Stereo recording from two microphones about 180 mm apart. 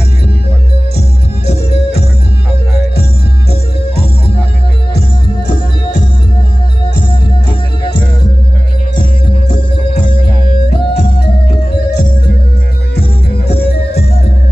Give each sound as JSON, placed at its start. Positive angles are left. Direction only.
{"t": 8.9, "sound": "music", "side_deg": 25}
{"t": 10.4, "sound": "music", "side_deg": 50}